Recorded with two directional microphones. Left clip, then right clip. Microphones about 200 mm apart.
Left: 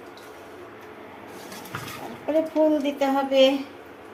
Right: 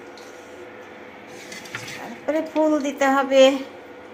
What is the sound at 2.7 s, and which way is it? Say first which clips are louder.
Speech: right 3 dB; 15° right (ahead or behind).